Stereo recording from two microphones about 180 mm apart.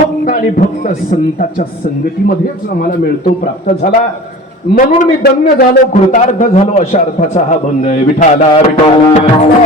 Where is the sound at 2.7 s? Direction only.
55° left (ahead or behind).